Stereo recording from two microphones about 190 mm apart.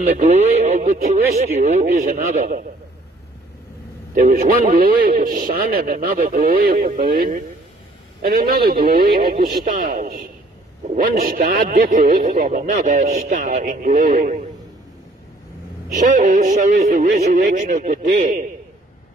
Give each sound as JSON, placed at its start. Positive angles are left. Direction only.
{"t": 0.0, "sound": "speech", "side_deg": -35}
{"t": 4.1, "sound": "a man's voice", "side_deg": -45}
{"t": 11.3, "sound": "speech", "side_deg": -60}
{"t": 11.9, "sound": "a man's voice", "side_deg": -45}
{"t": 16.1, "sound": "a man's voice", "side_deg": -40}